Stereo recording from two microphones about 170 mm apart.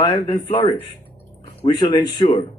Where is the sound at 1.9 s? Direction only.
25° left (ahead or behind).